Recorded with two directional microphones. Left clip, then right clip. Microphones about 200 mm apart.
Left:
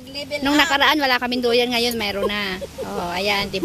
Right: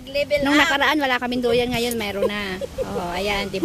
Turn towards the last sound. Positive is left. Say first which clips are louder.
# left 2 dB
turn(degrees=0)  # may be behind; listen again after turning